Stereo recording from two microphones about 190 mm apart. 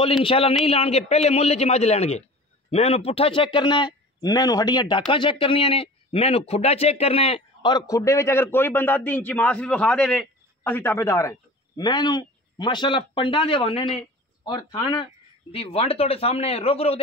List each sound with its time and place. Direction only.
0.2 s a man's voice: 30° left (ahead or behind)